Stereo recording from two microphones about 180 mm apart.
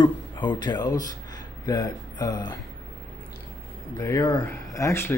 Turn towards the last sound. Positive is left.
turn(degrees=15)  # may be behind; listen again after turning